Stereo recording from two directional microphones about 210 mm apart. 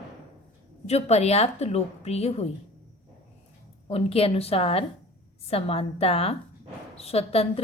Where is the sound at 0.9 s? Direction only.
30° left (ahead or behind).